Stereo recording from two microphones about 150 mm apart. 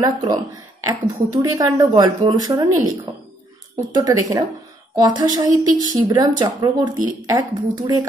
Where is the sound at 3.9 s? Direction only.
25° right (ahead or behind).